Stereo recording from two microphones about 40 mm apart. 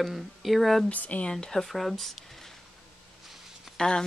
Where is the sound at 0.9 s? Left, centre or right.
Left.